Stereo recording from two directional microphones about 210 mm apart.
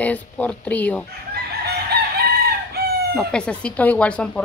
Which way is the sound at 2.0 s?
50° right (ahead or behind).